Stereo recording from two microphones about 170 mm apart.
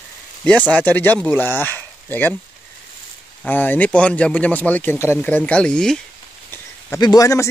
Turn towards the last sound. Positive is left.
turn(degrees=20)  # may be behind; listen again after turning